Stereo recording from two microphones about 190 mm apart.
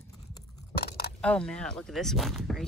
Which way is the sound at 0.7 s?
55° left (ahead or behind).